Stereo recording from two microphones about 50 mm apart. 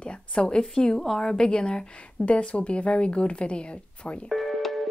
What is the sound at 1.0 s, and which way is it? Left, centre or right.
Speech, centre.